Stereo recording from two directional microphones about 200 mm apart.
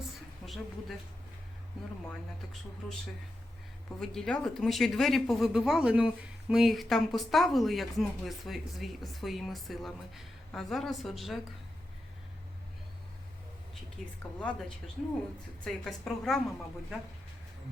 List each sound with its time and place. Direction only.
0.4 s a woman's voice: centre (ahead or behind)
4.0 s speech: 5° left (ahead or behind)
15.6 s speech: 5° left (ahead or behind)